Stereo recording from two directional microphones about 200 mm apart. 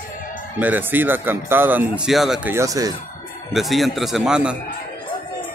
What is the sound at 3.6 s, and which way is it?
A man's voice, centre (ahead or behind).